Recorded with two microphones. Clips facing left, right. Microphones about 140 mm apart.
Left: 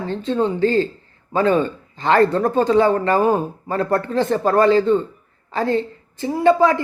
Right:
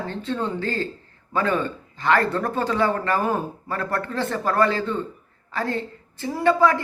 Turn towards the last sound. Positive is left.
turn(degrees=20)  # may be behind; listen again after turning